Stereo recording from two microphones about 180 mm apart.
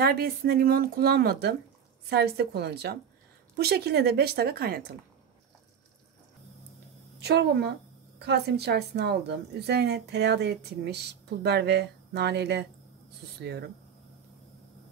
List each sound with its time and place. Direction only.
0.0 s speech: 60° right (ahead or behind)
7.2 s a woman's voice: 70° right (ahead or behind)